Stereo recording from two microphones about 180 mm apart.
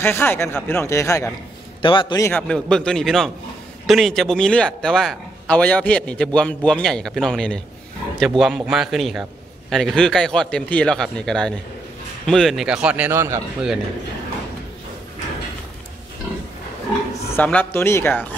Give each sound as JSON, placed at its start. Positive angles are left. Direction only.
{"t": 0.0, "sound": "speech", "side_deg": 10}
{"t": 1.8, "sound": "a man's voice", "side_deg": 25}
{"t": 2.2, "sound": "a man's voice", "side_deg": 5}
{"t": 17.4, "sound": "speech", "side_deg": 10}